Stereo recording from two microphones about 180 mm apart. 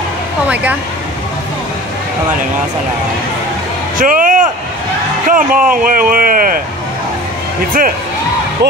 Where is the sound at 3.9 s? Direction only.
50° right (ahead or behind).